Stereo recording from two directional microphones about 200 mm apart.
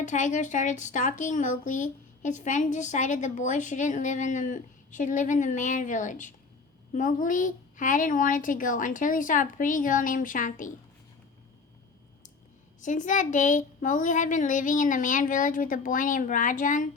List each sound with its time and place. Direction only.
0.0 s a woman's voice: 40° left (ahead or behind)
12.8 s a woman's voice: 40° left (ahead or behind)